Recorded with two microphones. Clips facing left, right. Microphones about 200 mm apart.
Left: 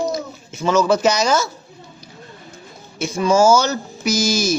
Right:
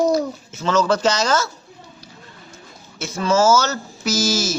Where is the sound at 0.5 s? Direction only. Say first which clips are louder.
Left 3 dB; 10° left (ahead or behind).